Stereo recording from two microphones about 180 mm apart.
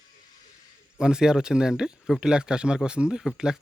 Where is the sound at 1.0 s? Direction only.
5° right (ahead or behind).